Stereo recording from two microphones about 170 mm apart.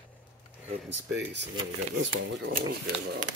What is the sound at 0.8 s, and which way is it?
Speech, 90° right.